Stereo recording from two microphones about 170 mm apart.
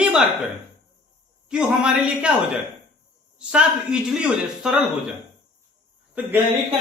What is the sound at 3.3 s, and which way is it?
Speech, 5° right (ahead or behind).